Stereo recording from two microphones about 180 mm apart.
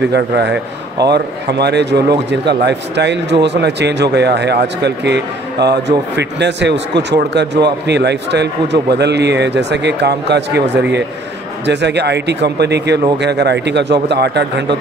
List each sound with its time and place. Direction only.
0.1 s speech: 70° right (ahead or behind)